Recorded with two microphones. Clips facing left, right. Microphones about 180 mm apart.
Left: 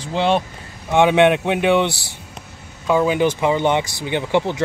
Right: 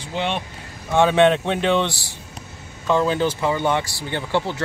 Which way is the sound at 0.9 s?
15° left (ahead or behind).